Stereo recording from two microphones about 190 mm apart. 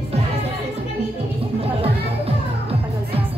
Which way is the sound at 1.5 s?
30° right (ahead or behind).